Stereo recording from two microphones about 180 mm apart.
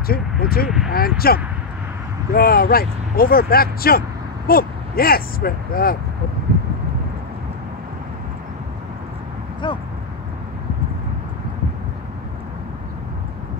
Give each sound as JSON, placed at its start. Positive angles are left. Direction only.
{"t": 0.1, "sound": "speech", "side_deg": 55}
{"t": 9.6, "sound": "speech", "side_deg": 25}